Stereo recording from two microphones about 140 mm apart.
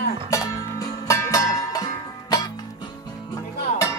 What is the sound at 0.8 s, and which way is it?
Music, 25° left (ahead or behind).